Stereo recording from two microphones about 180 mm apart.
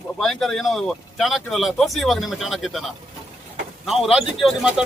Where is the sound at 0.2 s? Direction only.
Centre (ahead or behind).